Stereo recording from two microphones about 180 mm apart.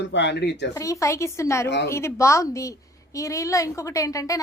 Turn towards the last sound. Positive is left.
turn(degrees=20)  # may be behind; listen again after turning